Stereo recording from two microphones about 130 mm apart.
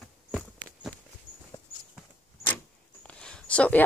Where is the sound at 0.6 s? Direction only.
85° right.